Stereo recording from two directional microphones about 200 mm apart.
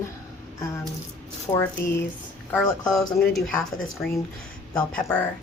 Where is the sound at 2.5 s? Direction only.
5° left (ahead or behind).